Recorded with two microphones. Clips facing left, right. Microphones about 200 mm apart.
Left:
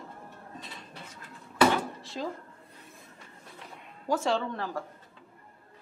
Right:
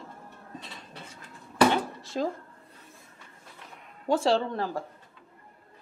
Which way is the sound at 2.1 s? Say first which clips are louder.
Right 6 dB; 50° right (ahead or behind).